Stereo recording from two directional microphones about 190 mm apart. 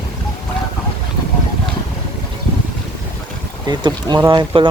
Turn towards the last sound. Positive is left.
turn(degrees=-25)  # may be behind; listen again after turning